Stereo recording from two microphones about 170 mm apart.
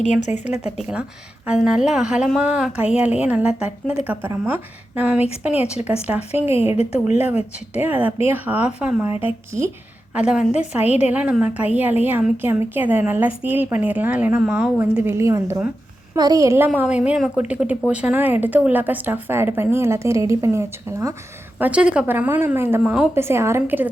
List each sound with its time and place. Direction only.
0.0 s speech: 45° left (ahead or behind)
1.5 s a woman's voice: 5° right (ahead or behind)
6.4 s speech: 35° left (ahead or behind)
7.7 s a woman's voice: 10° right (ahead or behind)
21.6 s a woman's voice: 5° right (ahead or behind)
23.1 s a woman's voice: 15° right (ahead or behind)